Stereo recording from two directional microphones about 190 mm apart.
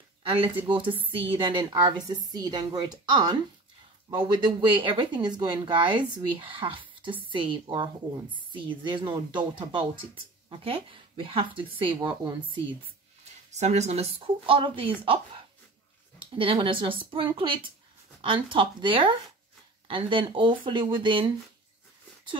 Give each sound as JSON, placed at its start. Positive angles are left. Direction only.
{"t": 0.2, "sound": "a sound", "side_deg": -30}
{"t": 0.7, "sound": "speech", "side_deg": -25}
{"t": 13.5, "sound": "a woman's voice", "side_deg": -35}
{"t": 16.2, "sound": "speech", "side_deg": -30}